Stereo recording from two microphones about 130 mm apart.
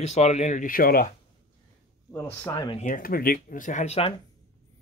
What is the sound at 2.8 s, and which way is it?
Speech, 90° left.